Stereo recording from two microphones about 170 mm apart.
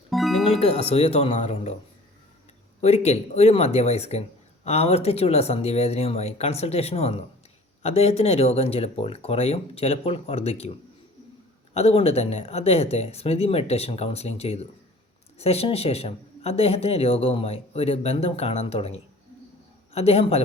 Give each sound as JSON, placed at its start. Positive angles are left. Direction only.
{"t": 0.1, "sound": "music", "side_deg": 0}
{"t": 0.5, "sound": "speech", "side_deg": 35}
{"t": 2.8, "sound": "speech", "side_deg": 40}
{"t": 11.7, "sound": "speech", "side_deg": 40}